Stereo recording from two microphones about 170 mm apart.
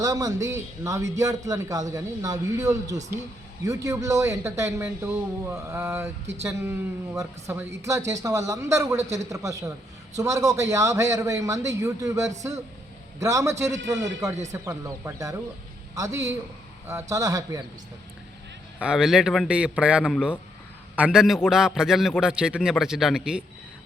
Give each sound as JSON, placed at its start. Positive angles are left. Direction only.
{"t": 0.0, "sound": "a man's voice", "side_deg": -20}
{"t": 18.8, "sound": "a man's voice", "side_deg": -5}